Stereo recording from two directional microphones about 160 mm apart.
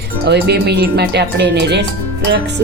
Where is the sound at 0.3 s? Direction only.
90° right.